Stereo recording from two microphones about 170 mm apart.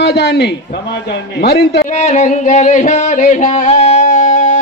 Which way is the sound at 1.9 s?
45° left (ahead or behind).